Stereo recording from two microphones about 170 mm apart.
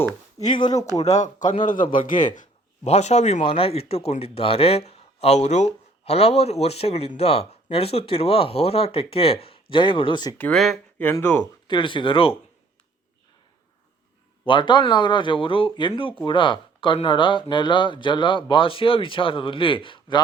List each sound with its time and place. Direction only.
0.3 s speech: 25° left (ahead or behind)
1.0 s a man's voice: 45° left (ahead or behind); by 10.3 s 25° left (ahead or behind)
10.3 s speech: 10° left (ahead or behind)
11.7 s speech: 30° left (ahead or behind)
14.4 s speech: 25° left (ahead or behind)